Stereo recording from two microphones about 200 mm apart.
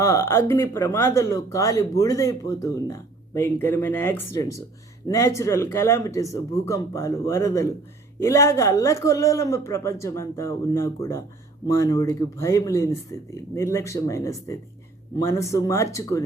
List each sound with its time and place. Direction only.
0.0 s speech: 15° left (ahead or behind)